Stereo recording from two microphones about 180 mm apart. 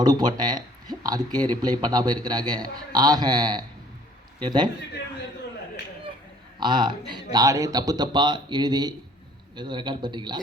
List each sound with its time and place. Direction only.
0.0 s speech: 20° right (ahead or behind)
6.6 s speech: 25° right (ahead or behind)